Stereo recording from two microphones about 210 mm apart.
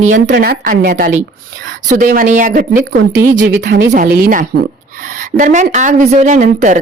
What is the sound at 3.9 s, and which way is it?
A woman's voice, 45° right (ahead or behind).